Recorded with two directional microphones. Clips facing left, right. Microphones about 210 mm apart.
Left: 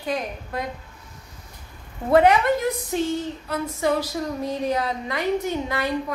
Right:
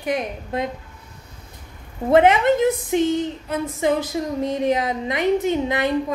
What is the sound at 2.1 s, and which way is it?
A woman's voice, 20° right (ahead or behind).